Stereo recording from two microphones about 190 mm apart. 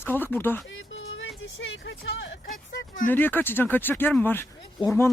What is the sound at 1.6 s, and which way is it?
Speech, 90° left.